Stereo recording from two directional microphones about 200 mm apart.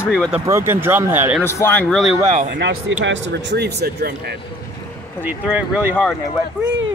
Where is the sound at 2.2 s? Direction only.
40° right (ahead or behind).